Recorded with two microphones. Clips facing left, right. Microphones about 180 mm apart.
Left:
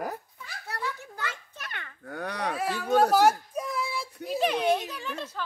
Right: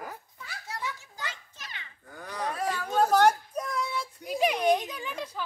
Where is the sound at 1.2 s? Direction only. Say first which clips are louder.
Left 3 dB; 60° left (ahead or behind).